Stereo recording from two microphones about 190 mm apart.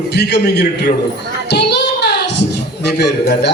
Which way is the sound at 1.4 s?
65° left (ahead or behind).